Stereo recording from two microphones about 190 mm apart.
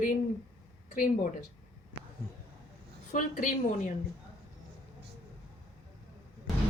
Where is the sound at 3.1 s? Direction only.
40° left (ahead or behind).